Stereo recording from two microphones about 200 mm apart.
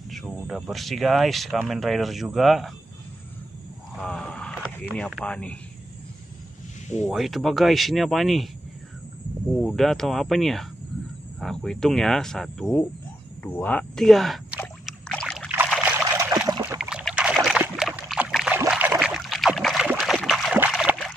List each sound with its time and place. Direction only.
0.1 s speech: centre (ahead or behind)
4.0 s vehicle: 5° left (ahead or behind)
7.1 s speech: centre (ahead or behind)
9.6 s speech: centre (ahead or behind)
13.4 s rowboat: 10° left (ahead or behind); by 16.3 s 10° right (ahead or behind)
16.3 s a sound: 20° right (ahead or behind)
16.6 s boat: 5° right (ahead or behind)
18.7 s a sound: 5° right (ahead or behind)